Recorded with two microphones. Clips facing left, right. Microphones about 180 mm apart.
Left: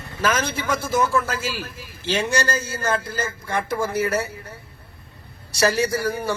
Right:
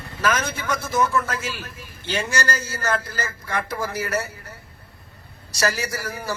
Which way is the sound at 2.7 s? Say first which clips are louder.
Left 1 dB; 30° left (ahead or behind).